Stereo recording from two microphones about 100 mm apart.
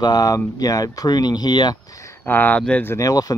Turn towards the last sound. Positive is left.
turn(degrees=35)  # may be behind; listen again after turning